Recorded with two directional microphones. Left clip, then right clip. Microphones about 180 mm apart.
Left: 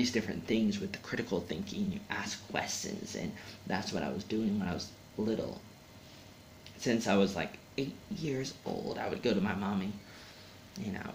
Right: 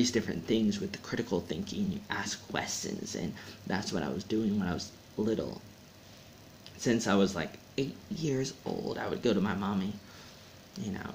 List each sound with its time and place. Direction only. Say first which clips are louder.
0.0 s speech: right 3 dB; 30° right (ahead or behind)
6.8 s speech: right 1 dB; 30° right (ahead or behind)